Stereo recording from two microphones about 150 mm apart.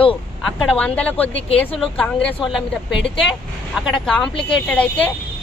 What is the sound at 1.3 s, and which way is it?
Speech, 40° left (ahead or behind).